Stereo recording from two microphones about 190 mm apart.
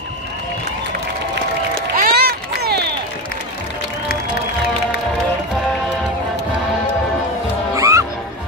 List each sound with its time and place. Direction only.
2.0 s run: 50° right (ahead or behind)
7.7 s music: 15° right (ahead or behind)